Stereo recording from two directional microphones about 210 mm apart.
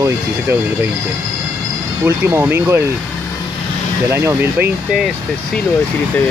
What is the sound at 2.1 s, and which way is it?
Speech, 10° right (ahead or behind).